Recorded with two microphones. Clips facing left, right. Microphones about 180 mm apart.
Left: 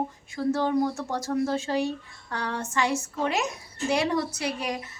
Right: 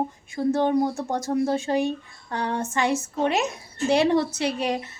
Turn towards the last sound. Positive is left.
turn(degrees=-30)  # may be behind; listen again after turning